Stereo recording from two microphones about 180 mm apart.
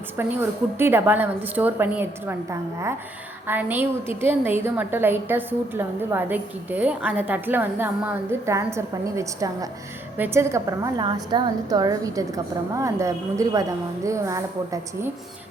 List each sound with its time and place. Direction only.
0.2 s a woman's voice: 10° right (ahead or behind)